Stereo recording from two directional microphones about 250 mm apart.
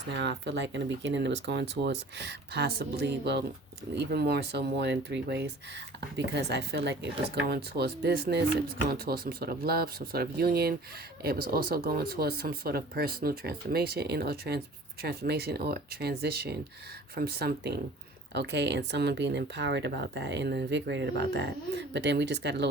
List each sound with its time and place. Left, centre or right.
0.1 s speech: right